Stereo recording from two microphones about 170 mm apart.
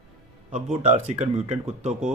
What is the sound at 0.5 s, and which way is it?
Speech, 45° right (ahead or behind).